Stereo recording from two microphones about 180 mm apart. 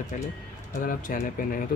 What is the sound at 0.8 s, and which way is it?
Speech, 45° left (ahead or behind).